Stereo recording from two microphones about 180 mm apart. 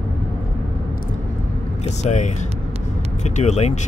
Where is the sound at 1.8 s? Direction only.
40° left (ahead or behind).